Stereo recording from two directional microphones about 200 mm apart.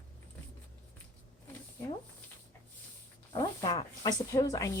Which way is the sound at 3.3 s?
20° left (ahead or behind).